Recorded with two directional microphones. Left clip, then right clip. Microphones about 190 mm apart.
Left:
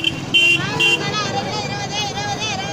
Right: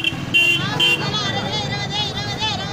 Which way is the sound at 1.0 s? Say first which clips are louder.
Left 1 dB; 35° left (ahead or behind).